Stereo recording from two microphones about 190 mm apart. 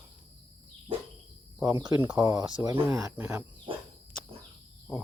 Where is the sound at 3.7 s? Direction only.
30° right (ahead or behind).